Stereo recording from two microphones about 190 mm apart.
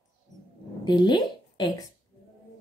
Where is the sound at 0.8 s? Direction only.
25° left (ahead or behind).